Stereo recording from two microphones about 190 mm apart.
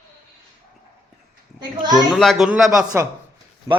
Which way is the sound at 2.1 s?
Centre (ahead or behind).